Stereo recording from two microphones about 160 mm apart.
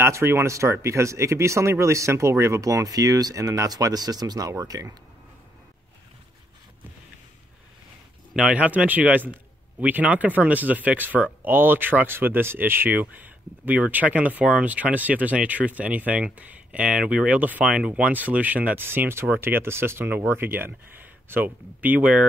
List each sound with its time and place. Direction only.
0.0 s speech: 15° right (ahead or behind)
8.3 s speech: 5° right (ahead or behind)